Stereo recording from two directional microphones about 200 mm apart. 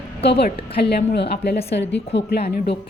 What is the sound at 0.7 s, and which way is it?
A woman's voice, 55° left (ahead or behind).